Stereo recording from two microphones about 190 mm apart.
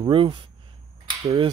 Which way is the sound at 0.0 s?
25° right (ahead or behind).